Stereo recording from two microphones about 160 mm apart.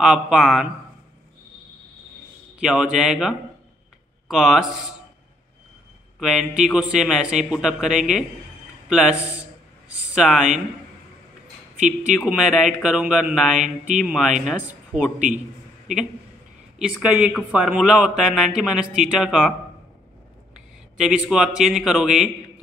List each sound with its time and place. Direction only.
0.0 s speech: 5° right (ahead or behind)
2.6 s speech: 5° right (ahead or behind)
6.1 s speech: centre (ahead or behind)
8.8 s a sound: 5° right (ahead or behind)
12.3 s speech: 5° right (ahead or behind)
13.6 s mantra: 50° right (ahead or behind)
14.0 s speech: centre (ahead or behind)
16.7 s speech: 5° right (ahead or behind)
21.0 s speech: 5° right (ahead or behind)